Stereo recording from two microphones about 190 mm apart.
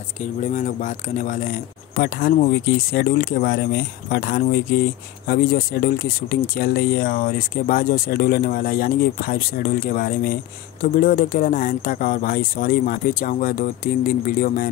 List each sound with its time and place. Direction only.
0.2 s speech: 40° left (ahead or behind)